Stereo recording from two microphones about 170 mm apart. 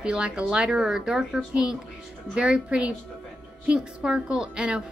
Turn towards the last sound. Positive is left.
turn(degrees=-5)  # may be behind; listen again after turning